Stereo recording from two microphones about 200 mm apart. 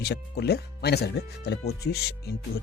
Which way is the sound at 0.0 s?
55° left (ahead or behind).